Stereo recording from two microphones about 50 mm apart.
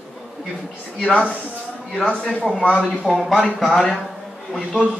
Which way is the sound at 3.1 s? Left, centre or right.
Centre.